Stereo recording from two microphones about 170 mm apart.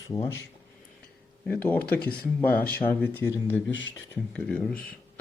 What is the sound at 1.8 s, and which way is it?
Speech, 65° left (ahead or behind).